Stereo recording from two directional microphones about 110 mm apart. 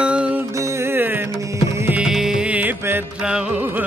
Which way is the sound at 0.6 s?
25° right (ahead or behind).